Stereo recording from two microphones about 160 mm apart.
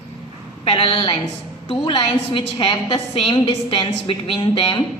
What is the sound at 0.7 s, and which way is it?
A woman's voice, 35° left (ahead or behind).